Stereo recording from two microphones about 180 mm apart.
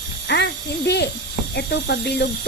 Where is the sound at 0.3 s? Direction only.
70° left (ahead or behind).